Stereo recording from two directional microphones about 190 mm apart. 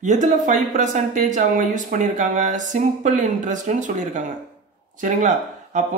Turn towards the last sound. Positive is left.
turn(degrees=-40)  # may be behind; listen again after turning